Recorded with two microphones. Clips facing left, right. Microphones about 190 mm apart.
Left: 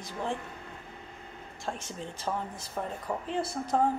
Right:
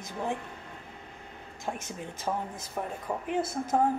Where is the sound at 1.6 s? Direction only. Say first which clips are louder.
Right 1 dB; 10° right (ahead or behind).